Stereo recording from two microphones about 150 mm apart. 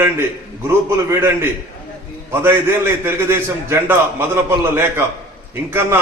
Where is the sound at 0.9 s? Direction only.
15° right (ahead or behind).